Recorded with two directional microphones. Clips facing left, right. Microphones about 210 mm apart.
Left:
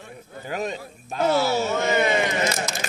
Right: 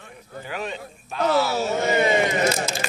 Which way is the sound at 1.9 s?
25° right (ahead or behind).